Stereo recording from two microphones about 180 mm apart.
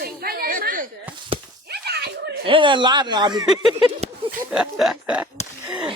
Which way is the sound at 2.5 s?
25° right (ahead or behind).